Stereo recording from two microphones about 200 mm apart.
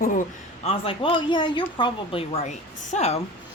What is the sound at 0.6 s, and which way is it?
Speech, 25° left (ahead or behind).